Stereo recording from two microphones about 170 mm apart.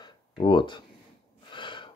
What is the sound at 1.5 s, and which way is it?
Gasp, 30° left (ahead or behind).